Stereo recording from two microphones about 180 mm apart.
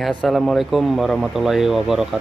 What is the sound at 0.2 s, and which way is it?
Speech, centre (ahead or behind).